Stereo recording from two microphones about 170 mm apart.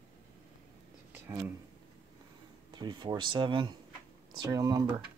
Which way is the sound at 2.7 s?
25° right (ahead or behind).